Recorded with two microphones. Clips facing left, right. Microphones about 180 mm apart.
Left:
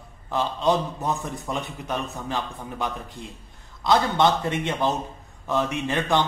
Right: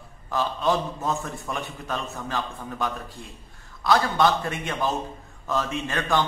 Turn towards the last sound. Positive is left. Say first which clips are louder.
# left 2 dB
turn(degrees=20)  # may be behind; listen again after turning